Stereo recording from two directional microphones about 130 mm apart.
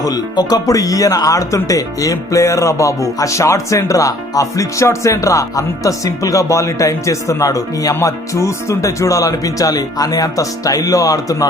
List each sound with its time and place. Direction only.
0.0 s speech: 30° left (ahead or behind)